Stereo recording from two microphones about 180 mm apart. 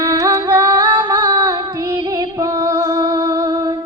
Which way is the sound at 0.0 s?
20° right (ahead or behind).